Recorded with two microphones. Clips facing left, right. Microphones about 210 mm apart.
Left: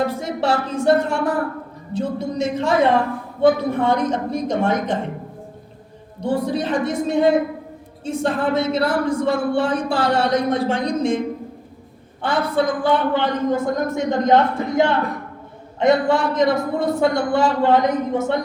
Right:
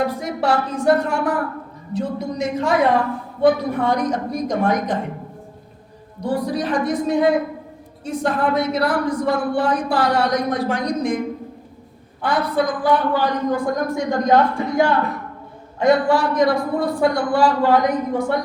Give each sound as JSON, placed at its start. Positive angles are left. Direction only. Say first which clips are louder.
{"t": 0.0, "sound": "speech", "louder": "even", "side_deg": 25}
{"t": 6.1, "sound": "speech", "louder": "left 1 dB", "side_deg": 25}
{"t": 12.2, "sound": "speech", "louder": "even", "side_deg": 25}